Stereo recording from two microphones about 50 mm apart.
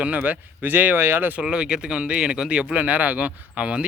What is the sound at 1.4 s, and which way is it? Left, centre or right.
Speech, centre.